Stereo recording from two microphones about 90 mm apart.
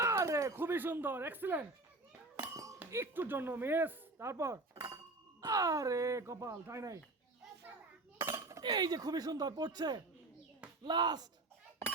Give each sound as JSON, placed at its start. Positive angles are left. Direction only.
{"t": 0.0, "sound": "speech", "side_deg": -35}
{"t": 2.9, "sound": "speech", "side_deg": -25}
{"t": 8.4, "sound": "a sound", "side_deg": -35}
{"t": 8.6, "sound": "speech", "side_deg": -50}